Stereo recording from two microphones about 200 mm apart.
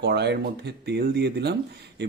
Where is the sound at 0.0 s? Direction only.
55° right (ahead or behind).